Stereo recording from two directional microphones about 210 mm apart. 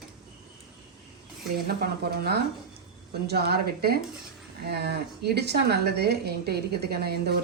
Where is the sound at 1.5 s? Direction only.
45° right (ahead or behind).